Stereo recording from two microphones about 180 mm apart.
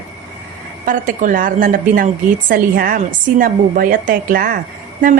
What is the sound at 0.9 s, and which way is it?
A woman's voice, 50° right (ahead or behind).